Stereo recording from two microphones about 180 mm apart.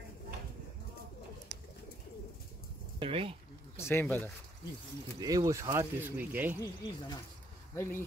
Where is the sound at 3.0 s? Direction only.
30° right (ahead or behind).